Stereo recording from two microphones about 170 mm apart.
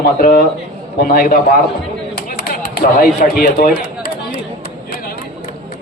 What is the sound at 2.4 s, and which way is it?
Speech, 65° left (ahead or behind).